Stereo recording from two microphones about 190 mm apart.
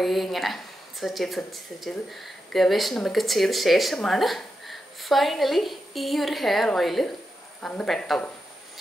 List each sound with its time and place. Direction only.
0.0 s speech: centre (ahead or behind)